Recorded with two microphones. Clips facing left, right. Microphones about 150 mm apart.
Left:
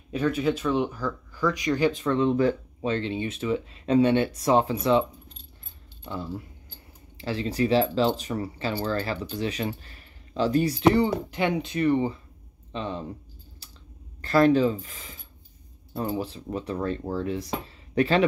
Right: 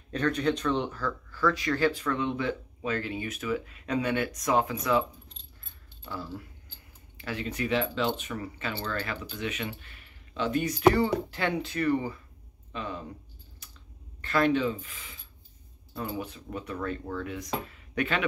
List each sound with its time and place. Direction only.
0.1 s speech: 5° left (ahead or behind); by 2.9 s 40° left (ahead or behind)
2.9 s speech: 25° left (ahead or behind)
6.0 s speech: 25° left (ahead or behind)
10.9 s speech: 20° left (ahead or behind)
13.6 s a sound: 30° left (ahead or behind)
14.2 s speech: 35° left (ahead or behind)